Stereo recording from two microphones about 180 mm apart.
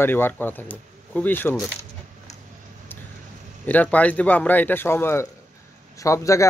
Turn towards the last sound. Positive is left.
turn(degrees=15)  # may be behind; listen again after turning